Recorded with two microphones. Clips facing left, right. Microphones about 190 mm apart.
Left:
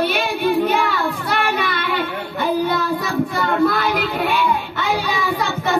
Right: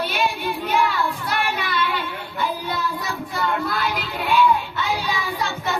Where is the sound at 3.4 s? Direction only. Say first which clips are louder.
Left 4 dB; 60° left (ahead or behind).